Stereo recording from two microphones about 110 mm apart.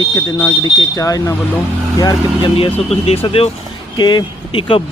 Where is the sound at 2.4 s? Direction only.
55° left (ahead or behind).